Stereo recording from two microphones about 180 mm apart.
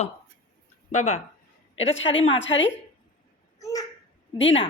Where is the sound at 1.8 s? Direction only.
90° left.